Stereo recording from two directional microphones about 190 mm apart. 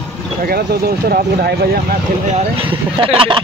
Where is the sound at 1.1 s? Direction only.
55° right (ahead or behind).